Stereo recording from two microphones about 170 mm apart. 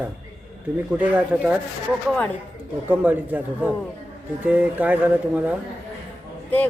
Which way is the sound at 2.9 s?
10° right (ahead or behind).